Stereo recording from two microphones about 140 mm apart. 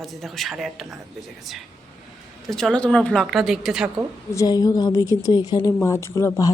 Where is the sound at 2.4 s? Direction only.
5° left (ahead or behind).